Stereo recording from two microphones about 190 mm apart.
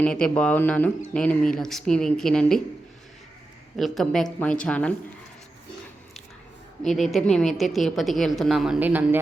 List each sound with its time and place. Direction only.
0.0 s speech: 5° left (ahead or behind)
3.8 s speech: centre (ahead or behind)
6.8 s speech: centre (ahead or behind)